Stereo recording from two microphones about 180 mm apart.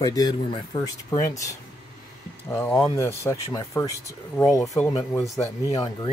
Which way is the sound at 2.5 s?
15° left (ahead or behind).